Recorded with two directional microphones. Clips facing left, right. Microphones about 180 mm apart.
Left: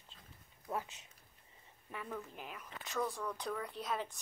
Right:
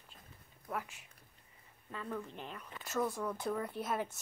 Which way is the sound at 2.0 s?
5° left (ahead or behind).